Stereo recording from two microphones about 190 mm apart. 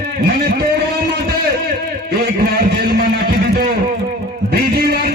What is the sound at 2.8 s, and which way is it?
Music, 55° right (ahead or behind).